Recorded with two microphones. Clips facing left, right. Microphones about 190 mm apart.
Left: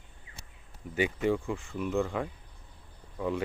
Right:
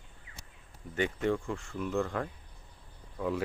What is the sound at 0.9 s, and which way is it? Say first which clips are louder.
Speech: left 2 dB; 5° left (ahead or behind).